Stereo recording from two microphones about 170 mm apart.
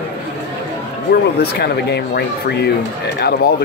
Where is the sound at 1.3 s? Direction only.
75° left (ahead or behind).